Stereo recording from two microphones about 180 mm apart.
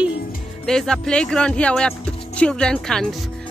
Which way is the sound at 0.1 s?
55° left (ahead or behind).